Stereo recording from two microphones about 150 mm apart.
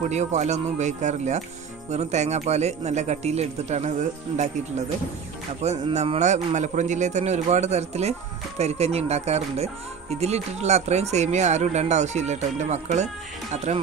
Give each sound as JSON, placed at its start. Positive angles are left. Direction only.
{"t": 0.0, "sound": "speech", "side_deg": -50}